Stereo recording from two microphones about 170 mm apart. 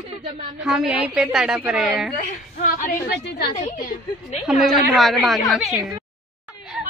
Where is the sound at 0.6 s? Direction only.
5° right (ahead or behind).